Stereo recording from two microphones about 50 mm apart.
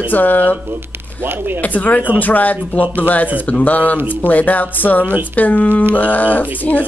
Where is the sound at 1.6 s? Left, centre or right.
Left.